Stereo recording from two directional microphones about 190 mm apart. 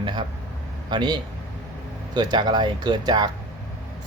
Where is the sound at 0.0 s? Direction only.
25° right (ahead or behind).